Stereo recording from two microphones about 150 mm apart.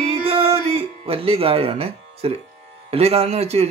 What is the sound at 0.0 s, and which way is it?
Music, 40° right (ahead or behind).